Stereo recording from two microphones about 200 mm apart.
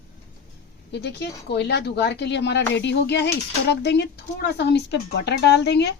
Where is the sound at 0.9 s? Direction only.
55° left (ahead or behind).